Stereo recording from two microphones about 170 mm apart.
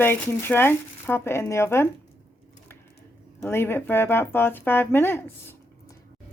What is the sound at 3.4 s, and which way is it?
Speech, 15° left (ahead or behind).